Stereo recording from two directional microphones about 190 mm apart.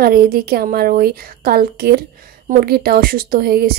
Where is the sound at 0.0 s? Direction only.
50° right (ahead or behind).